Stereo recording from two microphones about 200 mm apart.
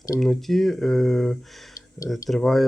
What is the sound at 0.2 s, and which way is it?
Speech, centre (ahead or behind).